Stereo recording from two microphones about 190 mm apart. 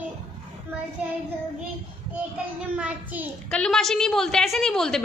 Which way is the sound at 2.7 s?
10° right (ahead or behind).